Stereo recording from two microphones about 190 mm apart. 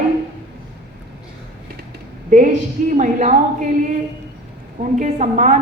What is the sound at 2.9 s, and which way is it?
Speech, 40° right (ahead or behind).